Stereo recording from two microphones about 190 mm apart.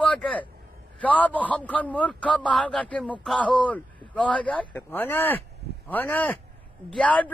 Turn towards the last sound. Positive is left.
turn(degrees=5)  # may be behind; listen again after turning